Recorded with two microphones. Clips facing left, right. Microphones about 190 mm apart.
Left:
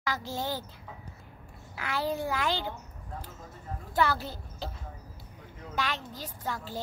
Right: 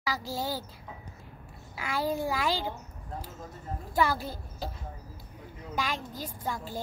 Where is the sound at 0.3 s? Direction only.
10° right (ahead or behind).